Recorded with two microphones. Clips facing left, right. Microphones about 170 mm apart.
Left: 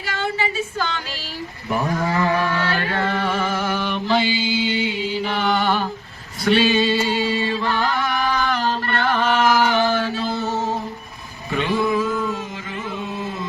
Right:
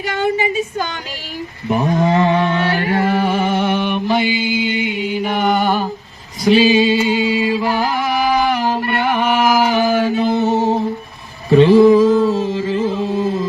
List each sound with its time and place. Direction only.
0.1 s speech: 15° right (ahead or behind)
1.6 s mantra: 20° right (ahead or behind)
3.2 s music: 25° right (ahead or behind)
4.2 s mantra: 55° right (ahead or behind)
5.2 s mantra: 15° right (ahead or behind)
6.5 s chant: 5° right (ahead or behind)
8.5 s mantra: 15° right (ahead or behind)
11.4 s mantra: 35° right (ahead or behind)